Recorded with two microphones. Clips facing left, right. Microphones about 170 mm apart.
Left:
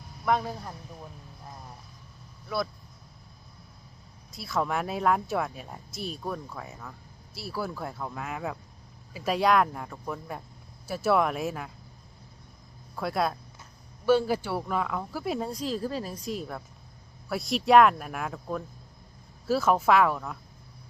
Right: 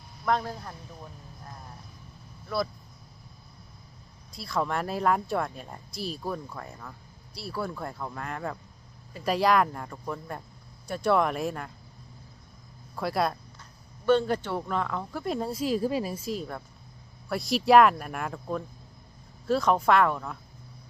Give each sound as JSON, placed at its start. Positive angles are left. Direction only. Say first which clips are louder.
{"t": 0.3, "sound": "speech", "louder": "left 1 dB", "side_deg": 5}
{"t": 4.3, "sound": "speech", "louder": "even", "side_deg": 0}
{"t": 13.0, "sound": "speech", "louder": "right 1 dB", "side_deg": 0}